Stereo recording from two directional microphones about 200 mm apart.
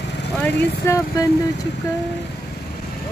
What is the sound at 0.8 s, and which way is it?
Speech, 15° left (ahead or behind).